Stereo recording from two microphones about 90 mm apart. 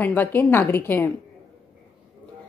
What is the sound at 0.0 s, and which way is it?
A woman's voice, 20° left (ahead or behind).